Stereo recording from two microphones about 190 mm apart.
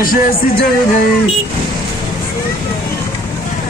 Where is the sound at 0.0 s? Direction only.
50° left (ahead or behind).